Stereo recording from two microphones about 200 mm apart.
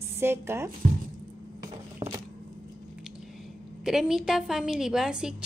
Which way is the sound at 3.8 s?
Centre (ahead or behind).